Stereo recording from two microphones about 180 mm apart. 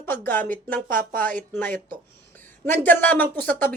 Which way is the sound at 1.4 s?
10° left (ahead or behind).